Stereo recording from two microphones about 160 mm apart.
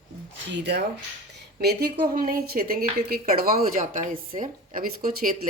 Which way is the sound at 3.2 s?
60° right (ahead or behind).